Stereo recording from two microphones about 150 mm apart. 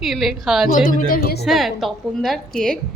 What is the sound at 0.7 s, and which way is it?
Speech, 60° left (ahead or behind).